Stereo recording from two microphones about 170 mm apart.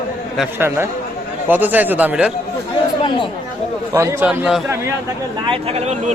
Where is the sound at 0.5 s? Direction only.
15° right (ahead or behind).